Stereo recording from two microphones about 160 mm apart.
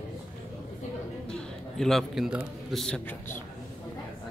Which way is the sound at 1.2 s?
Centre (ahead or behind).